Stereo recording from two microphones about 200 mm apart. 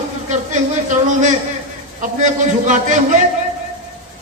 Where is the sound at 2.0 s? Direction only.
35° right (ahead or behind).